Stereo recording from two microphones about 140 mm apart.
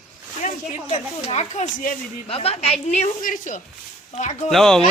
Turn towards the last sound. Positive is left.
turn(degrees=5)  # may be behind; listen again after turning